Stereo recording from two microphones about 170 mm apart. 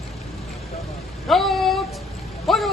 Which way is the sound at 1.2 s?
Centre (ahead or behind).